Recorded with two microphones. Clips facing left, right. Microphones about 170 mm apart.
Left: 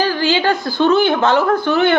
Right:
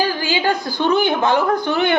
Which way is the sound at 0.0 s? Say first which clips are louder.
Left 3 dB; 15° right (ahead or behind).